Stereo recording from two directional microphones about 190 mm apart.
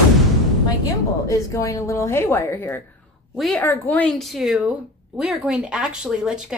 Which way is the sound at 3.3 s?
Centre (ahead or behind).